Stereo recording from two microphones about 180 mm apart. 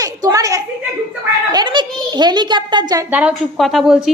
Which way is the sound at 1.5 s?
25° right (ahead or behind).